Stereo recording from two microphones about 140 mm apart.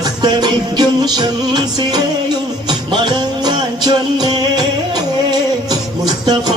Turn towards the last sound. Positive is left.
turn(degrees=-30)  # may be behind; listen again after turning